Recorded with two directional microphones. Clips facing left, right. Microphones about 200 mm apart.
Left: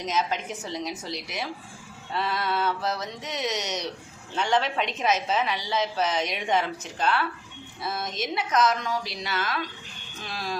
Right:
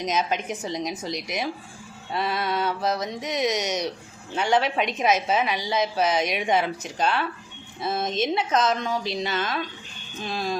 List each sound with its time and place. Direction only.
0.0 s a woman's voice: 15° right (ahead or behind)